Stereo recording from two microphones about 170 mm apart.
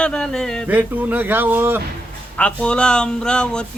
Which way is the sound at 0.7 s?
10° right (ahead or behind).